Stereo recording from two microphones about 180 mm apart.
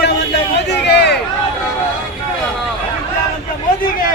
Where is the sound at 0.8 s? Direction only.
65° left (ahead or behind).